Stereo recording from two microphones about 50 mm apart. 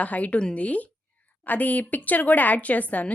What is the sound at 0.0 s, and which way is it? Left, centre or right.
A woman's voice, left.